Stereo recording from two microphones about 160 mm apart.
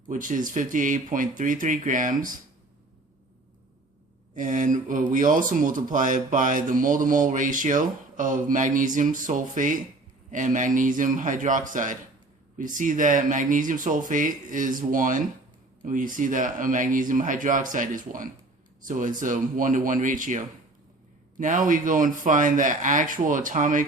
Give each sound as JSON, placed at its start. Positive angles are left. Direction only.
{"t": 0.1, "sound": "speech", "side_deg": -55}
{"t": 4.4, "sound": "a man's voice", "side_deg": -55}